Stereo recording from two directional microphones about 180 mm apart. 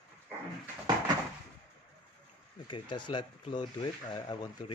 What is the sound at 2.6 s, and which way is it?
Speech, 25° left (ahead or behind).